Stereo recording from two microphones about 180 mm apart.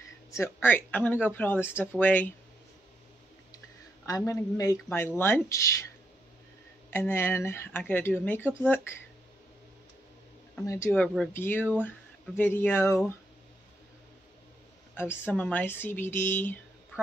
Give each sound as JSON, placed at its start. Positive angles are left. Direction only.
{"t": 0.3, "sound": "speech", "side_deg": 15}
{"t": 3.5, "sound": "a sound", "side_deg": 20}
{"t": 4.3, "sound": "speech", "side_deg": 15}
{"t": 6.9, "sound": "speech", "side_deg": 15}
{"t": 10.6, "sound": "speech", "side_deg": 15}
{"t": 15.0, "sound": "speech", "side_deg": 10}